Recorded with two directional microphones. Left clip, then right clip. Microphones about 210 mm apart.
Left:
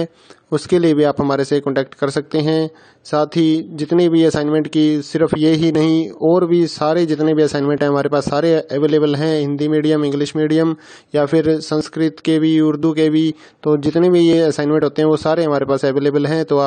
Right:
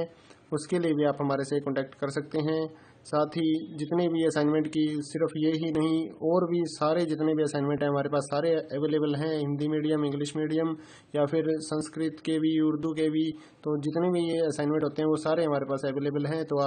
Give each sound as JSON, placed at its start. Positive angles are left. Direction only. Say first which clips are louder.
{"t": 0.0, "sound": "a man's voice", "louder": "left 10 dB", "side_deg": 40}